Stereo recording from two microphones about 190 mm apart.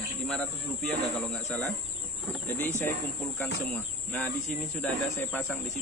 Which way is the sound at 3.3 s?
10° left (ahead or behind).